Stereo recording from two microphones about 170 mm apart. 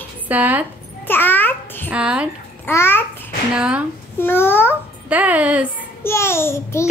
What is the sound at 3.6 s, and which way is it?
Speech, 5° right (ahead or behind).